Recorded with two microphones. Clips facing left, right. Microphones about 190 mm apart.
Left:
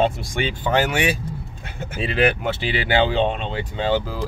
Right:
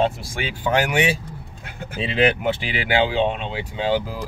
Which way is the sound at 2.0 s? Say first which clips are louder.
Even; 20° right (ahead or behind).